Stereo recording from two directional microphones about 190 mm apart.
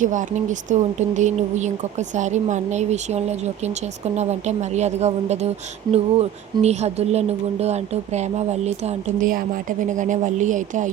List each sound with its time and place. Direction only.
0.0 s speech: 40° right (ahead or behind)